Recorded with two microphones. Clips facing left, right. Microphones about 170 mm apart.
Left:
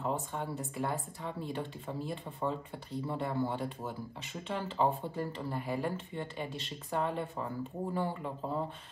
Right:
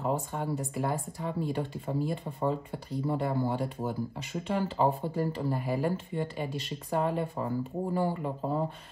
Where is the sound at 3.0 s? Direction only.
35° right (ahead or behind).